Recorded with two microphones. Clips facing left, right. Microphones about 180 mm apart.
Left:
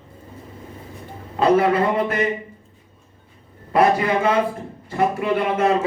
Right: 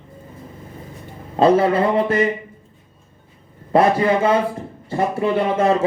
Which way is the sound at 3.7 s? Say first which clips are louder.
Right 2 dB; 30° right (ahead or behind).